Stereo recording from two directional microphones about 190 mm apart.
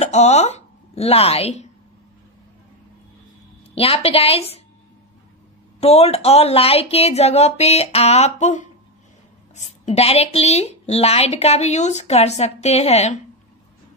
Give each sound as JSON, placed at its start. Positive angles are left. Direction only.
{"t": 0.0, "sound": "speech", "side_deg": 35}
{"t": 3.7, "sound": "a woman's voice", "side_deg": 30}
{"t": 5.8, "sound": "a woman's voice", "side_deg": 30}